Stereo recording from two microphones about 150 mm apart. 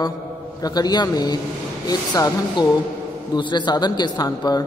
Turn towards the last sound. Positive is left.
turn(degrees=25)  # may be behind; listen again after turning